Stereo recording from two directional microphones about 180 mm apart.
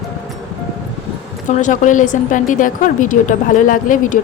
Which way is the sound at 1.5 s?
45° left (ahead or behind).